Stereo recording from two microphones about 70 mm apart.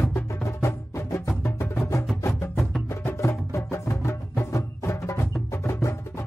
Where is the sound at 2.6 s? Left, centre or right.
Centre.